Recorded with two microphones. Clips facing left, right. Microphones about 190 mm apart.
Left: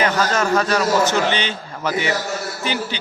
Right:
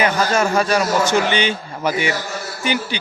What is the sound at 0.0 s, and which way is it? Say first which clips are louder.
A man's voice: right 1 dB; 10° right (ahead or behind).